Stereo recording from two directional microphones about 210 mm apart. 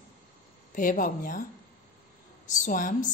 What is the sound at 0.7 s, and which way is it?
Speech, 40° left (ahead or behind).